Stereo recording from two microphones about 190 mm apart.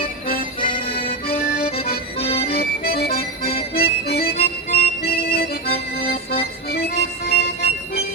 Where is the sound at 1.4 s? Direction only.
50° left (ahead or behind).